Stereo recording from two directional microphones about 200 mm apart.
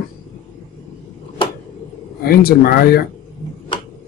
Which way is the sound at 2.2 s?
50° left (ahead or behind).